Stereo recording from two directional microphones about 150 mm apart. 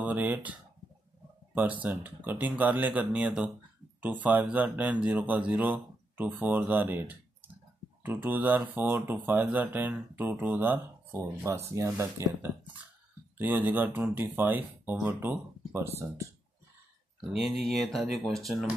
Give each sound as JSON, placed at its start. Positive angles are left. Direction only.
{"t": 0.0, "sound": "speech", "side_deg": -10}
{"t": 17.3, "sound": "speech", "side_deg": 0}